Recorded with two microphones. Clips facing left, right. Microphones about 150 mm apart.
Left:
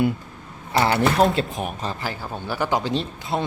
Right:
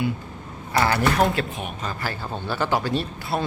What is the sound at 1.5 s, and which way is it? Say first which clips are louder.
Speech: left 3 dB; 35° left (ahead or behind).